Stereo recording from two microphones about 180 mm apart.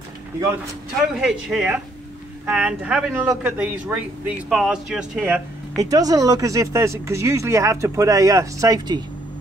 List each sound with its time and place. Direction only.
1.2 s speech: 5° right (ahead or behind)
5.8 s speech: 20° right (ahead or behind)